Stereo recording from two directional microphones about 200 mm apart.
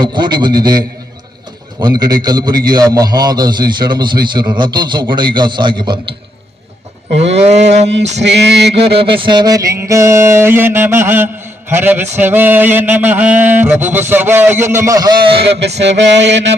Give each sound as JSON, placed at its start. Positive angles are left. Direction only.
{"t": 0.0, "sound": "a man's voice", "side_deg": -25}
{"t": 1.8, "sound": "a man's voice", "side_deg": -20}
{"t": 7.5, "sound": "a sound", "side_deg": -35}
{"t": 8.2, "sound": "mantra", "side_deg": -60}
{"t": 9.0, "sound": "mantra", "side_deg": -25}
{"t": 15.8, "sound": "mantra", "side_deg": -60}